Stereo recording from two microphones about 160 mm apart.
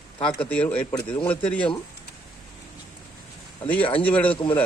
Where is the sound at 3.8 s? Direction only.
35° left (ahead or behind).